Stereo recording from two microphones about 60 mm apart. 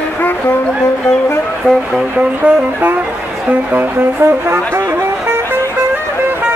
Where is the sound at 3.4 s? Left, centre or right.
Right.